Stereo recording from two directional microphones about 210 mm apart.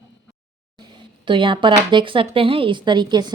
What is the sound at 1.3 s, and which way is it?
Speech, 25° right (ahead or behind).